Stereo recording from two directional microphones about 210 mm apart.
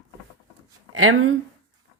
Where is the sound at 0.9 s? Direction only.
80° right.